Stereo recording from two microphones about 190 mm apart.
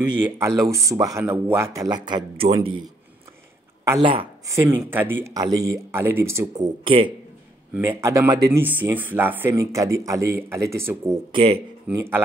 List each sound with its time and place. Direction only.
0.2 s speech: 15° right (ahead or behind)
4.0 s speech: 30° right (ahead or behind)
4.5 s speech: 15° right (ahead or behind); by 7.1 s 30° right (ahead or behind)
7.7 s speech: 10° right (ahead or behind)
11.3 s speech: 30° right (ahead or behind)
11.9 s speech: 15° right (ahead or behind)